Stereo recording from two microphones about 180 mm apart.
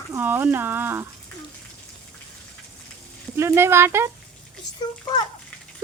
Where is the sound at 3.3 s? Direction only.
15° right (ahead or behind).